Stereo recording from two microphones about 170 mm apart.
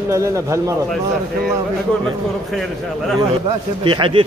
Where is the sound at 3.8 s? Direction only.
30° right (ahead or behind).